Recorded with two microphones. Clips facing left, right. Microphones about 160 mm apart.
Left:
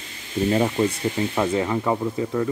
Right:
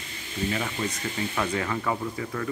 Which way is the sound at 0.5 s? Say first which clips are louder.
Left 10 dB; 35° left (ahead or behind).